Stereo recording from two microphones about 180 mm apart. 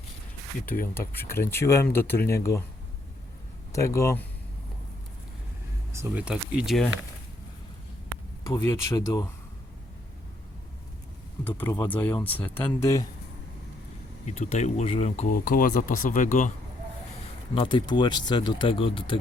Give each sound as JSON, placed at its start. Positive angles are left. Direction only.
{"t": 0.9, "sound": "speech", "side_deg": 15}
{"t": 3.7, "sound": "speech", "side_deg": 15}
{"t": 5.9, "sound": "speech", "side_deg": -10}
{"t": 8.4, "sound": "speech", "side_deg": 20}
{"t": 11.4, "sound": "speech", "side_deg": 10}
{"t": 14.3, "sound": "speech", "side_deg": 40}
{"t": 15.3, "sound": "speech", "side_deg": 55}
{"t": 17.5, "sound": "speech", "side_deg": 25}